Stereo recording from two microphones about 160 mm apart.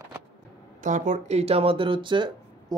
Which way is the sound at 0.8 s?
50° right (ahead or behind).